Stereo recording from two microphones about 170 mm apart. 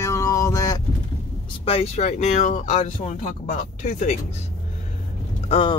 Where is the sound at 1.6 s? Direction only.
40° left (ahead or behind).